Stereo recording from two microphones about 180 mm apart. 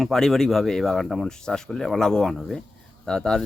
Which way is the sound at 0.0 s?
Centre (ahead or behind).